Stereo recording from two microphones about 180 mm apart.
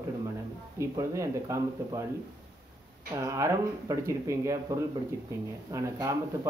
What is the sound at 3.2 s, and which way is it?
Speech, 15° right (ahead or behind).